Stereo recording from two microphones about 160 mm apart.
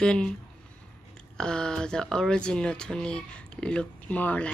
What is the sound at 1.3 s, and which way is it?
Speech, 5° left (ahead or behind).